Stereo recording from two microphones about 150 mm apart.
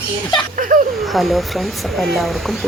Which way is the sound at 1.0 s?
Centre (ahead or behind).